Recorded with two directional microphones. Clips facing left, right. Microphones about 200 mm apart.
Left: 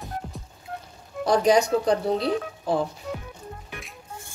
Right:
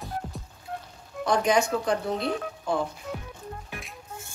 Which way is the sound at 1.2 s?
35° left (ahead or behind).